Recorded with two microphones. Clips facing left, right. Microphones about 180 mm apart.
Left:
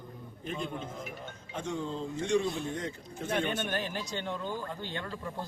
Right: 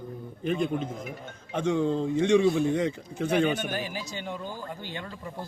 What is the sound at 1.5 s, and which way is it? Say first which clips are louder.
A man's voice: right 10 dB; 75° right (ahead or behind).